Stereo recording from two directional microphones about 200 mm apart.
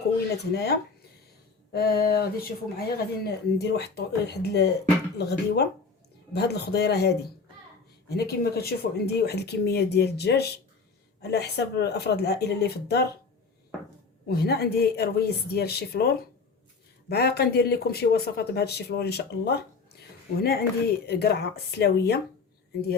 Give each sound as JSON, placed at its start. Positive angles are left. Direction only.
{"t": 0.5, "sound": "speech", "side_deg": 55}
{"t": 8.1, "sound": "speech", "side_deg": 50}
{"t": 14.3, "sound": "speech", "side_deg": 55}